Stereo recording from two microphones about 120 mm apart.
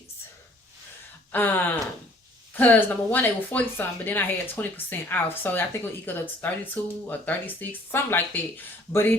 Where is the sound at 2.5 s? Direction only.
15° left (ahead or behind).